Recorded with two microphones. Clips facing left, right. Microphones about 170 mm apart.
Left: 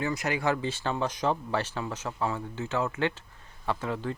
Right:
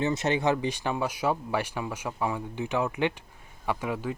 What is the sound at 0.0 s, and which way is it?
Speech, 25° right (ahead or behind).